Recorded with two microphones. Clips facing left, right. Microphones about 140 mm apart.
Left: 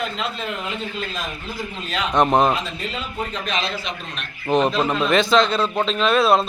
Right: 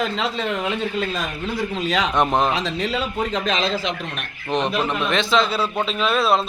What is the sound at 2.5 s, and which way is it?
Speech, 90° right.